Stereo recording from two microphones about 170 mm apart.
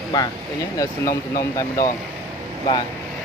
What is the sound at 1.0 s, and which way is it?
Speech, 55° left (ahead or behind).